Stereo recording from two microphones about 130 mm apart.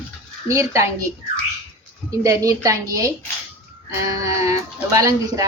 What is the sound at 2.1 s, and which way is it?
Speech, 25° right (ahead or behind).